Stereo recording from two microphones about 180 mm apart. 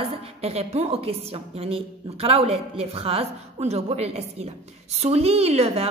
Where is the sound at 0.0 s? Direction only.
35° right (ahead or behind).